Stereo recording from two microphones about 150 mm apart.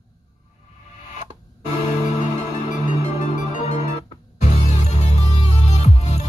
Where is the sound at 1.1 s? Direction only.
50° left (ahead or behind).